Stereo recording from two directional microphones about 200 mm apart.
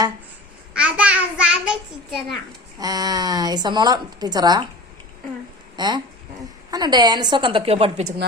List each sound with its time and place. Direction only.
0.7 s child singing: 5° right (ahead or behind)
2.7 s a woman's voice: 20° right (ahead or behind)
5.7 s a woman's voice: 20° right (ahead or behind)